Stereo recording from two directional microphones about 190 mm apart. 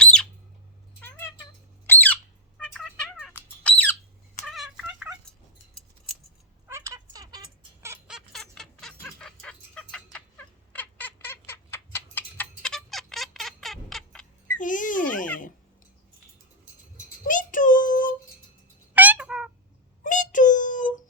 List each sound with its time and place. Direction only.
0.0 s bird: 5° left (ahead or behind)
1.9 s squawk: 10° left (ahead or behind)
2.7 s music: 5° left (ahead or behind)
3.6 s bird: 10° left (ahead or behind)
4.4 s turkey: centre (ahead or behind)
6.7 s cat: 15° right (ahead or behind)
8.0 s fowl: centre (ahead or behind)
14.6 s a sound: 45° left (ahead or behind)
17.2 s child singing: 45° left (ahead or behind)
18.9 s a sound: 10° right (ahead or behind)
20.0 s wail: 40° left (ahead or behind)